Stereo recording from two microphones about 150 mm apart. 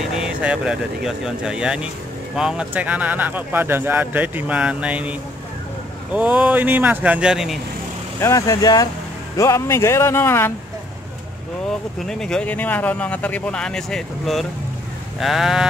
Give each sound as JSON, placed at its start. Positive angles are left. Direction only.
{"t": 0.0, "sound": "speech", "side_deg": -5}
{"t": 6.1, "sound": "speech", "side_deg": -10}
{"t": 8.2, "sound": "speech", "side_deg": 20}
{"t": 12.1, "sound": "speech", "side_deg": 5}
{"t": 15.1, "sound": "sheep", "side_deg": 0}